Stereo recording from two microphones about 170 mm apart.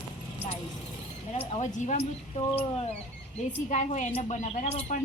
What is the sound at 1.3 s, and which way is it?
Speech, 40° left (ahead or behind).